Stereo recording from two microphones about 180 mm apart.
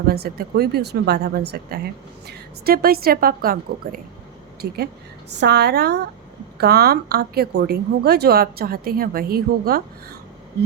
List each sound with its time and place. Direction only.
0.1 s speech: 60° right (ahead or behind)